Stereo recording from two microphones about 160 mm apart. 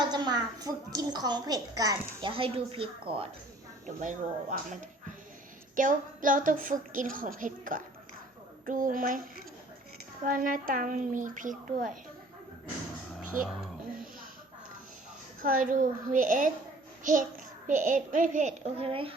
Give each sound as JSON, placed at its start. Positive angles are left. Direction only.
{"t": 0.1, "sound": "a woman's voice", "side_deg": -25}
{"t": 3.8, "sound": "a woman's voice", "side_deg": -50}
{"t": 10.2, "sound": "a woman's voice", "side_deg": -60}
{"t": 15.4, "sound": "a woman's voice", "side_deg": -55}
{"t": 18.8, "sound": "speech", "side_deg": -35}